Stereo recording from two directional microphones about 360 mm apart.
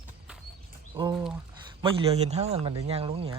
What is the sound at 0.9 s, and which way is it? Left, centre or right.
Speech, centre.